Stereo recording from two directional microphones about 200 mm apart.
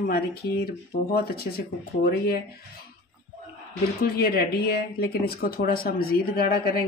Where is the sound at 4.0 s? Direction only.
50° left (ahead or behind).